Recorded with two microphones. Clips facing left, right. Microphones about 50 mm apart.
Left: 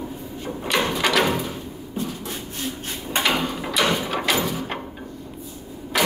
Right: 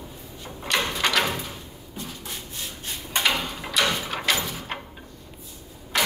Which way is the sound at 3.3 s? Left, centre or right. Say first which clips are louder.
Left 3 dB; centre.